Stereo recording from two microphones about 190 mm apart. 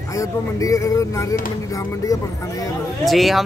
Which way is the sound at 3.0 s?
Centre (ahead or behind).